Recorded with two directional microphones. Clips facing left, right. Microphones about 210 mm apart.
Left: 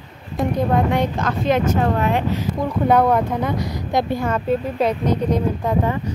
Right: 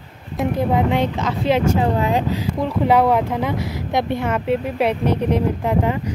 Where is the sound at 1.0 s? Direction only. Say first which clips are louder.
Even; 30° right (ahead or behind).